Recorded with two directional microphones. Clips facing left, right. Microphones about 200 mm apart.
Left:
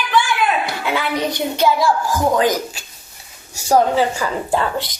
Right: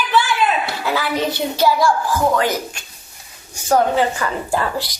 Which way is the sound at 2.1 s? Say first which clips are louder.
Left 1 dB; 15° left (ahead or behind).